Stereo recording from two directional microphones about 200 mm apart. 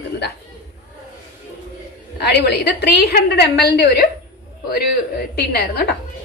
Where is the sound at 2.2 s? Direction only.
55° left (ahead or behind).